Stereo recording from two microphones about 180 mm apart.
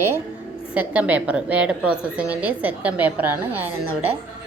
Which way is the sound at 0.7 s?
10° right (ahead or behind).